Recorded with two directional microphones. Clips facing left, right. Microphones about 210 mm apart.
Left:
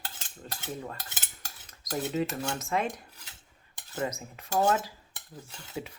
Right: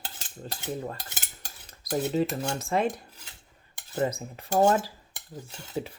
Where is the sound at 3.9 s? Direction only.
35° right (ahead or behind).